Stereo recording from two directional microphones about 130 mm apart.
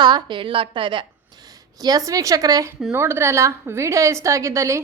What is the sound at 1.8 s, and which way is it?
A woman's voice, 25° right (ahead or behind).